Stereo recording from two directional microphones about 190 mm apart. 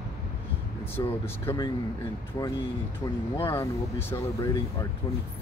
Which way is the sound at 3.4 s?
15° left (ahead or behind).